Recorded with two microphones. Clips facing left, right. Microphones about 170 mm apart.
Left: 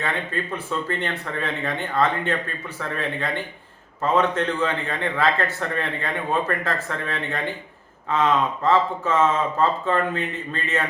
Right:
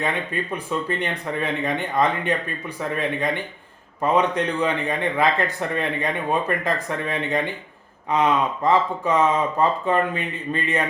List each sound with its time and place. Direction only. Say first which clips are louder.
0.5 s speech: right 3 dB; 15° right (ahead or behind)